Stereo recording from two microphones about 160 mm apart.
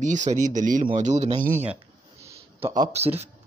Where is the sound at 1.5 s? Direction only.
10° right (ahead or behind).